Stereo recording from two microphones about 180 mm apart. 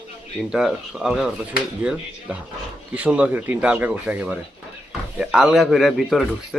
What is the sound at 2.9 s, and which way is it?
Speech, 5° right (ahead or behind).